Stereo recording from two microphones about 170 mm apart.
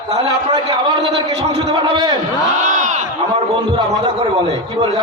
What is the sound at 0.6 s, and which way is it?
A man's voice, 30° right (ahead or behind).